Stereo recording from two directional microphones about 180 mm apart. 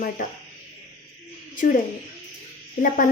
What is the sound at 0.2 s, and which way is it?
Speech, 50° left (ahead or behind).